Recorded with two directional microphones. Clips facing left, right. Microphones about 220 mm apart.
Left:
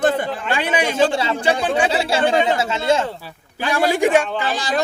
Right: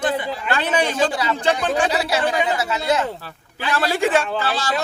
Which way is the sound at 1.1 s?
25° left (ahead or behind).